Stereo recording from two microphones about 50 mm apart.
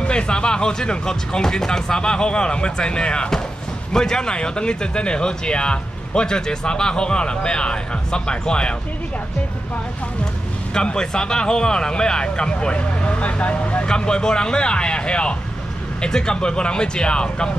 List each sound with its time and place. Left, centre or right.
0.0 s speech: centre
10.7 s speech: centre